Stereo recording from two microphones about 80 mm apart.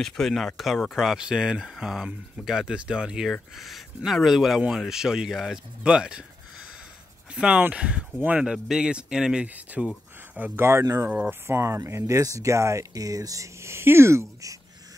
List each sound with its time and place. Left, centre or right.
0.0 s speech: centre
7.3 s speech: centre
10.5 s speech: right
11.1 s speech: centre
11.4 s speech: right